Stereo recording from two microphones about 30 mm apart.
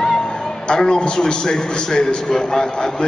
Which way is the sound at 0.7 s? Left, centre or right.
Left.